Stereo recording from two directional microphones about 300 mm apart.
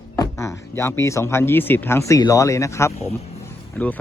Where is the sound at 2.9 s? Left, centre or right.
Left.